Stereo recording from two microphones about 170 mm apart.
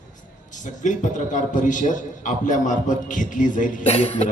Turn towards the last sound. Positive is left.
turn(degrees=40)  # may be behind; listen again after turning